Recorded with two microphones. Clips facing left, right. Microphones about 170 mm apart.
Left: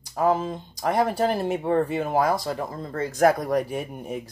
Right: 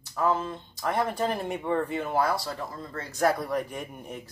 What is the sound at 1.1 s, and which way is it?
Speech, 35° left (ahead or behind).